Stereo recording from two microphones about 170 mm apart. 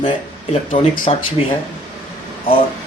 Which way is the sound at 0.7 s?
30° left (ahead or behind).